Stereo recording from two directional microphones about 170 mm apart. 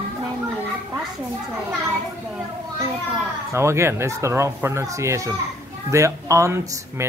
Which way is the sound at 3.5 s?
15° right (ahead or behind).